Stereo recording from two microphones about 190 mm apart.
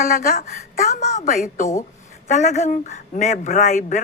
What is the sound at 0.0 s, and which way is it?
Speech, 45° left (ahead or behind).